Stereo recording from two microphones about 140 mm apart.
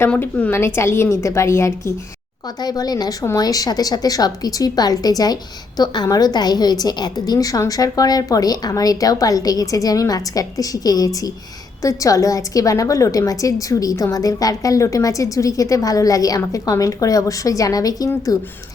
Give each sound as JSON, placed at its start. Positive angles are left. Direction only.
{"t": 0.1, "sound": "a woman's voice", "side_deg": 10}